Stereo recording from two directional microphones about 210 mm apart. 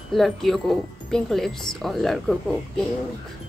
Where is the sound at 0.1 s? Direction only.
Centre (ahead or behind).